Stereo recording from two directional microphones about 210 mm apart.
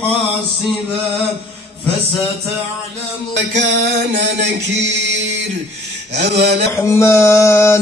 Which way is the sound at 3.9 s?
55° right (ahead or behind).